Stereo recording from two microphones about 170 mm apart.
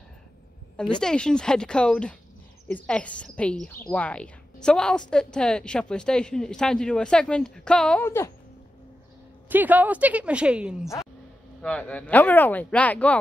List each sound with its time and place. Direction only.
1.0 s a woman's voice: 5° left (ahead or behind)
9.5 s a woman's voice: 10° right (ahead or behind)
11.6 s a woman's voice: 10° left (ahead or behind)